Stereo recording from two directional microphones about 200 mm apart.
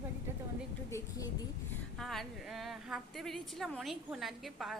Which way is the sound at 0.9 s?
15° left (ahead or behind).